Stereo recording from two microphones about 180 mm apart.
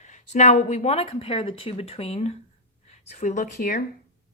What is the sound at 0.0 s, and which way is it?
Speech, 40° left (ahead or behind).